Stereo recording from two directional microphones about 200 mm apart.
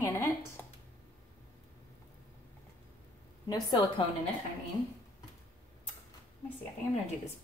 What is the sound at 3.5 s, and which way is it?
Speech, 20° left (ahead or behind).